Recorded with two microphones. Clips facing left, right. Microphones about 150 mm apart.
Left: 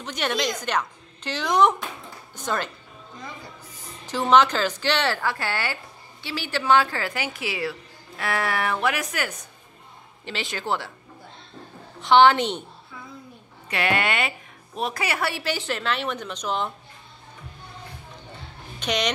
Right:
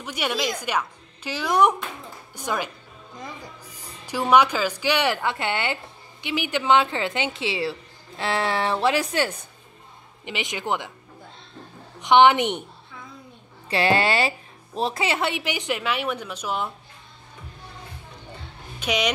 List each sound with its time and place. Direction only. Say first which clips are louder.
0.0 s a woman's voice: even; 10° right (ahead or behind)
4.0 s a woman's voice: even; 10° right (ahead or behind); by 9.5 s 30° right (ahead or behind)
10.2 s a woman's voice: right 1 dB; 15° right (ahead or behind)
12.0 s a woman's voice: even; 15° right (ahead or behind)
13.7 s a woman's voice: right 4 dB; 30° right (ahead or behind); by 16.7 s 5° right (ahead or behind)
18.8 s speech: right 1 dB; 5° right (ahead or behind)